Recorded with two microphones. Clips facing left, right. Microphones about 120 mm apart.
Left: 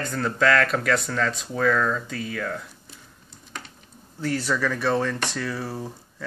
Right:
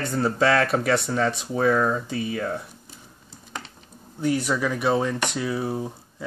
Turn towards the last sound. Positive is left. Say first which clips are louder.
# right 3 dB
turn(degrees=-15)  # may be behind; listen again after turning